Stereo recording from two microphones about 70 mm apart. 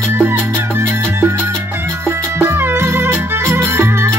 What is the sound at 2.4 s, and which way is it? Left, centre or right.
Music, right.